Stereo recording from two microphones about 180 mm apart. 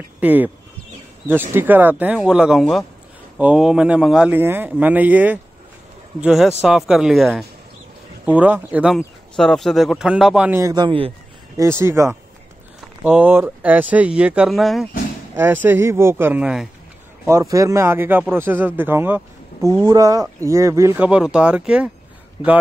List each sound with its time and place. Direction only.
0.2 s a man's voice: 10° right (ahead or behind)
10.6 s speech: 25° right (ahead or behind)
11.5 s speech: 15° right (ahead or behind)
17.3 s speech: 20° right (ahead or behind)